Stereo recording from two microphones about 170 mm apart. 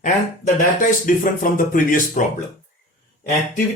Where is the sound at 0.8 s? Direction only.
50° left (ahead or behind).